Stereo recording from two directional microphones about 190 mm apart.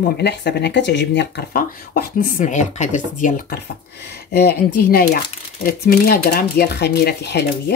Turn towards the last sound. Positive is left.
turn(degrees=60)  # may be behind; listen again after turning